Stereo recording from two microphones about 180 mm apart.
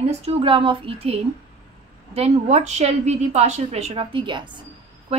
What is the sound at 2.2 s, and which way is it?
A woman's voice, 35° right (ahead or behind).